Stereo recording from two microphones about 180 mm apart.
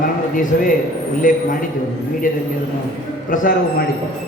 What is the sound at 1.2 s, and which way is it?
Speech, 50° left (ahead or behind).